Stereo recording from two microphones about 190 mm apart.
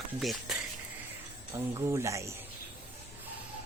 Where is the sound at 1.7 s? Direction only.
15° right (ahead or behind).